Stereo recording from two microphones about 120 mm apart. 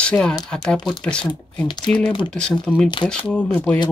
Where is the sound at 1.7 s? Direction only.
35° left (ahead or behind).